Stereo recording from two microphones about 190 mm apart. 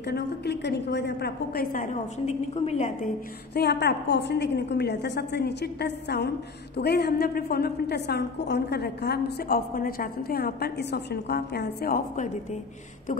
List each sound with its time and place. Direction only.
0.0 s a woman's voice: 60° left (ahead or behind); by 3.1 s 35° left (ahead or behind)
3.5 s a woman's voice: 60° left (ahead or behind)